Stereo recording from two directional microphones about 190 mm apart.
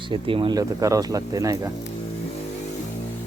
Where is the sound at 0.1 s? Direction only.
25° right (ahead or behind).